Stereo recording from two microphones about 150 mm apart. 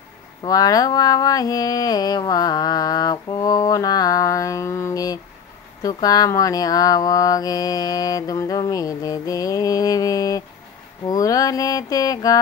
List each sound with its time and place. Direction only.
0.4 s mantra: 25° left (ahead or behind)